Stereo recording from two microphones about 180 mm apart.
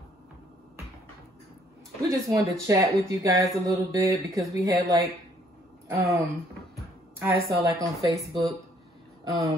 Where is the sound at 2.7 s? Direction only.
15° right (ahead or behind).